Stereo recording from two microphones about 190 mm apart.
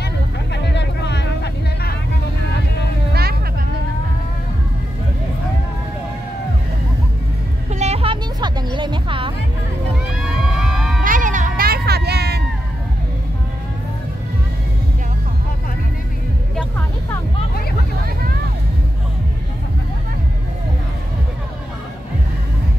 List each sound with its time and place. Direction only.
0.0 s vehicle: 65° left (ahead or behind)
7.7 s music: 35° right (ahead or behind)
10.6 s a sound: centre (ahead or behind)
11.1 s music: 45° right (ahead or behind); by 12.4 s 60° right (ahead or behind)
16.5 s music: 10° left (ahead or behind)